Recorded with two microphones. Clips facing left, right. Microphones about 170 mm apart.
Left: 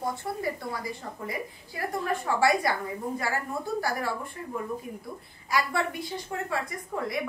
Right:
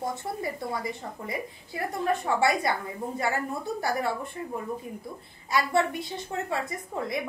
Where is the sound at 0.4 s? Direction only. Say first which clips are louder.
Right 1 dB; 25° right (ahead or behind).